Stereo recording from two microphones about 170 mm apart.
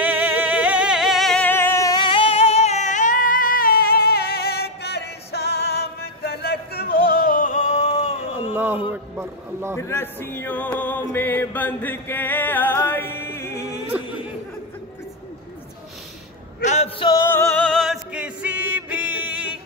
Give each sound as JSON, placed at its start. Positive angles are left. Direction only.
{"t": 0.0, "sound": "music", "side_deg": -10}
{"t": 8.5, "sound": "a sound", "side_deg": -10}
{"t": 9.8, "sound": "music", "side_deg": 15}
{"t": 16.6, "sound": "male singing", "side_deg": 40}
{"t": 17.1, "sound": "music", "side_deg": 15}
{"t": 18.1, "sound": "music", "side_deg": -10}